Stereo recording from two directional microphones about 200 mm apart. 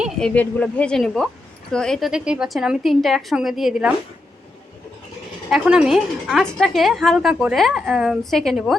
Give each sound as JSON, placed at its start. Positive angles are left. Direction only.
{"t": 0.0, "sound": "speech", "side_deg": 5}
{"t": 5.5, "sound": "speech", "side_deg": -5}